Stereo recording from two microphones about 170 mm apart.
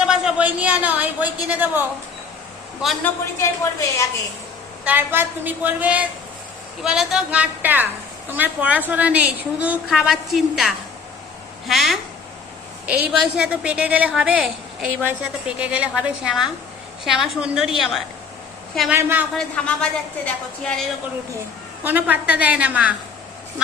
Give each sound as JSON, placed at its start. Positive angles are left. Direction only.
{"t": 0.0, "sound": "a man's voice", "side_deg": -5}
{"t": 3.0, "sound": "speech", "side_deg": 15}
{"t": 4.9, "sound": "a woman's voice", "side_deg": -10}
{"t": 19.4, "sound": "a woman's voice", "side_deg": 5}
{"t": 21.8, "sound": "a woman's voice", "side_deg": -10}